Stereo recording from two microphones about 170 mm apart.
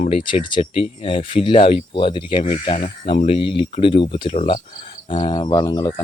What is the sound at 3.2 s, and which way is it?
Speech, 30° left (ahead or behind).